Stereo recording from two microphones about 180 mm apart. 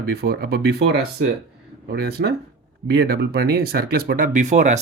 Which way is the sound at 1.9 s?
65° right (ahead or behind).